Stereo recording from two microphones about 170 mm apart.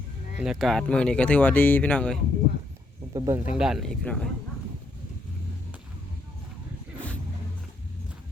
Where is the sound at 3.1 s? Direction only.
20° right (ahead or behind).